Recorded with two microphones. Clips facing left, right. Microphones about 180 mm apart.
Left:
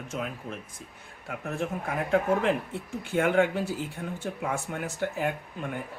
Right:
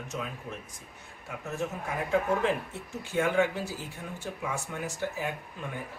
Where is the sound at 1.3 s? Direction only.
60° left (ahead or behind).